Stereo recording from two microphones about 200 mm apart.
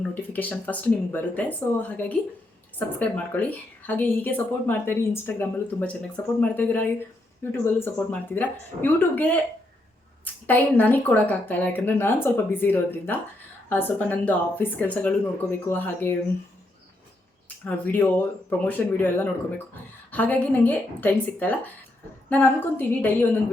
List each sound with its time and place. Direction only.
0.1 s a woman's voice: 10° left (ahead or behind)
10.4 s a woman's voice: 10° left (ahead or behind)
17.7 s a woman's voice: 10° left (ahead or behind)